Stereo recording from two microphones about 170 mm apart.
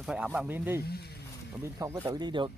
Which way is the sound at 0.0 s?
5° right (ahead or behind).